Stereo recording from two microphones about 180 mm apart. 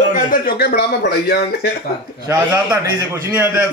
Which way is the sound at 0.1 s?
55° left (ahead or behind).